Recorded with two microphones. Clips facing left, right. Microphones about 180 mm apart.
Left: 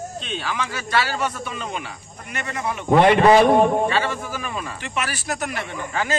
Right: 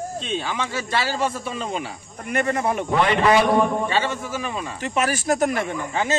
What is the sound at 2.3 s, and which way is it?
Speech, 50° right (ahead or behind).